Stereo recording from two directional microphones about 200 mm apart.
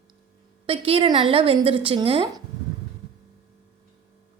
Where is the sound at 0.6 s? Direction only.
30° right (ahead or behind).